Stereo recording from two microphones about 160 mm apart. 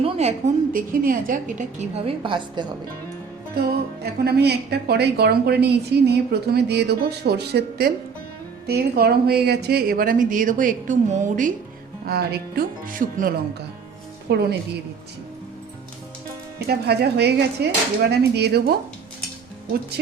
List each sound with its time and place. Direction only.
0.0 s a sound: 40° right (ahead or behind)
0.7 s a woman's voice: 60° right (ahead or behind)
2.0 s a woman's voice: 30° right (ahead or behind)
3.5 s a woman's voice: 75° right (ahead or behind); by 11.5 s 50° right (ahead or behind)
12.0 s speech: 80° right; by 13.3 s 60° right (ahead or behind)
14.3 s speech: 90° right
16.6 s speech: 90° right